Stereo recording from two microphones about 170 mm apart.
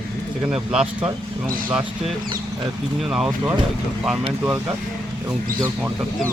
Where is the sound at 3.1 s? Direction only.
5° right (ahead or behind).